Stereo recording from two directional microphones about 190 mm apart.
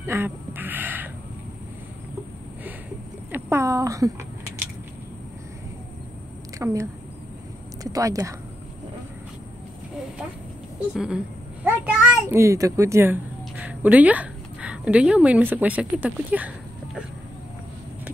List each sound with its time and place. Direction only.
0.0 s a sound: 10° right (ahead or behind)
3.3 s speech: 10° right (ahead or behind)
6.6 s speech: 15° right (ahead or behind)
11.0 s a child's voice: 5° right (ahead or behind)